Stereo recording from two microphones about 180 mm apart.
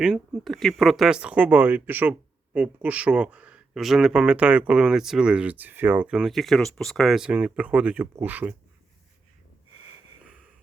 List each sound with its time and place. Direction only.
0.0 s speech: centre (ahead or behind)